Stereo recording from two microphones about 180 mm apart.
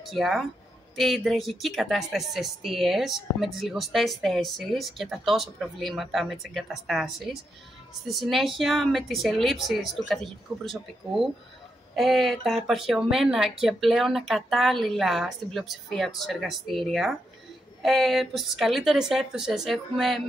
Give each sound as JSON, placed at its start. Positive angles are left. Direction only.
{"t": 0.0, "sound": "speech", "side_deg": 0}